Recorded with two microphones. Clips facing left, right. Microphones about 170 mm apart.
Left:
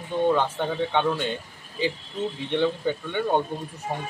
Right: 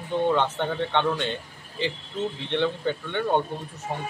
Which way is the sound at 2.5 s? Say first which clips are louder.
Left 2 dB; 10° left (ahead or behind).